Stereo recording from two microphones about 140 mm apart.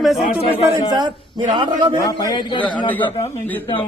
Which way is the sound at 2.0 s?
25° left (ahead or behind).